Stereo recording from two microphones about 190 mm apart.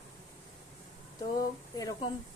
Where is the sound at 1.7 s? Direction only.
20° left (ahead or behind).